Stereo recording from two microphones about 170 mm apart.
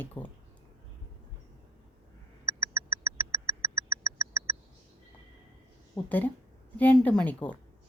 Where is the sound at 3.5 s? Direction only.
20° right (ahead or behind).